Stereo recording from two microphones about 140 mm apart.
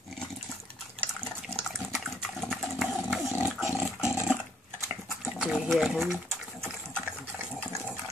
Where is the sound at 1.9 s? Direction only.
Centre (ahead or behind).